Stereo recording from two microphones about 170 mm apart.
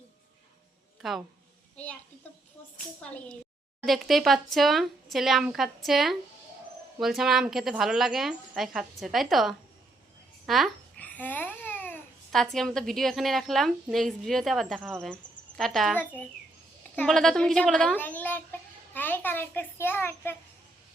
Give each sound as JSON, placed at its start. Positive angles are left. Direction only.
{"t": 1.0, "sound": "a woman's voice", "side_deg": 0}
{"t": 3.0, "sound": "a woman's voice", "side_deg": 5}